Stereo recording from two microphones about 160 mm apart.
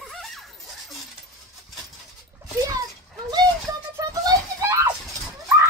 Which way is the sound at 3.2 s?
25° right (ahead or behind).